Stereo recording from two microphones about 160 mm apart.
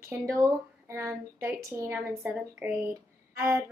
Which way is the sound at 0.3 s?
15° right (ahead or behind).